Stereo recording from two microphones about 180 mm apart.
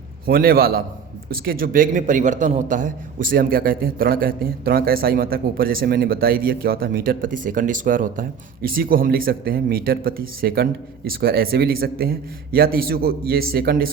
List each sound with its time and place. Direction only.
0.3 s a man's voice: 55° right (ahead or behind)